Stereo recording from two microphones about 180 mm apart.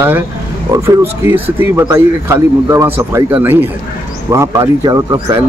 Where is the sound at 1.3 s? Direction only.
10° right (ahead or behind).